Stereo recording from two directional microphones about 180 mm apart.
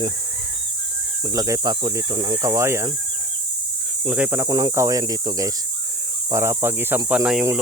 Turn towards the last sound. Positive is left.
turn(degrees=-5)  # may be behind; listen again after turning